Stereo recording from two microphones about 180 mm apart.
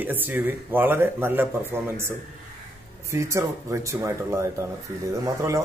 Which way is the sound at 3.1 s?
15° right (ahead or behind).